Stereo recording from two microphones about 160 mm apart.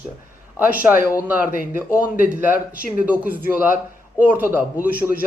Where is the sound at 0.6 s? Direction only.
10° right (ahead or behind).